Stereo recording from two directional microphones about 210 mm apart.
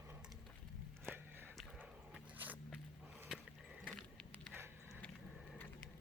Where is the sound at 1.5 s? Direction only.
Centre (ahead or behind).